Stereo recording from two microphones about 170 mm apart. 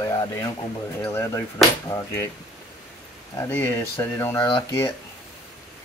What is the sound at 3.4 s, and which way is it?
Speech, 15° left (ahead or behind).